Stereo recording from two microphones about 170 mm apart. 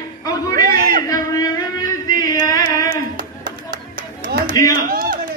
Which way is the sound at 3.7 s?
60° right (ahead or behind).